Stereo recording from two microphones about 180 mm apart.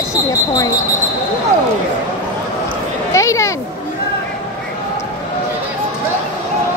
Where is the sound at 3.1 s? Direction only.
15° left (ahead or behind).